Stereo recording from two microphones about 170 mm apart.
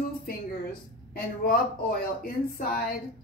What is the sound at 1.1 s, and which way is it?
Speech, 60° left (ahead or behind).